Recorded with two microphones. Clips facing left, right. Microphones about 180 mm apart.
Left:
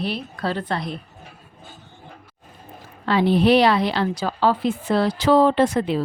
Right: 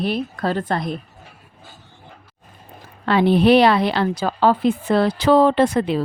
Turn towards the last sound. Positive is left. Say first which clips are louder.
# right 2 dB
turn(degrees=-65)  # may be behind; listen again after turning